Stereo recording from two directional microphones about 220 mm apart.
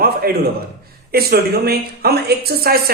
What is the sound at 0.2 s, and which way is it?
A man's voice, 40° right (ahead or behind).